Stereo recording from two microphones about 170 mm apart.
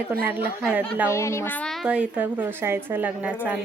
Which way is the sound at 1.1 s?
15° left (ahead or behind).